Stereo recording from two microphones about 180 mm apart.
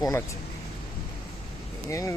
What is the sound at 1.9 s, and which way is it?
Speech, 15° left (ahead or behind).